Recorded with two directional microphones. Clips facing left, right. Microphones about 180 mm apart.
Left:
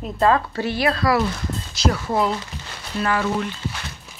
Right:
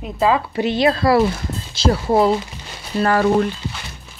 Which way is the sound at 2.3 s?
15° right (ahead or behind).